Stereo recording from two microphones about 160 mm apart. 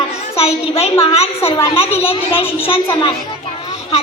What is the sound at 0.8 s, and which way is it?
A child's voice, 40° left (ahead or behind).